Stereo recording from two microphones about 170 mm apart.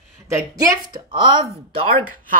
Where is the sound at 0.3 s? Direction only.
20° right (ahead or behind).